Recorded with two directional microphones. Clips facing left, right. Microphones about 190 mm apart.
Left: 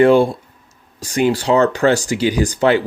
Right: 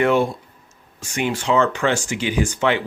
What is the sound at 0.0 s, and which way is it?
Speech, 30° left (ahead or behind).